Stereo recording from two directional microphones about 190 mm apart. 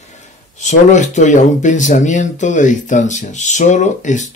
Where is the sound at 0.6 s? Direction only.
40° left (ahead or behind).